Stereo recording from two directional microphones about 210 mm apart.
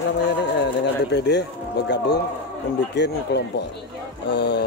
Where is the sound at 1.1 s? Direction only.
55° left (ahead or behind).